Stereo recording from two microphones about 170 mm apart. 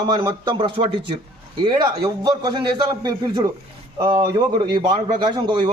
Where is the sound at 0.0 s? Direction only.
25° right (ahead or behind).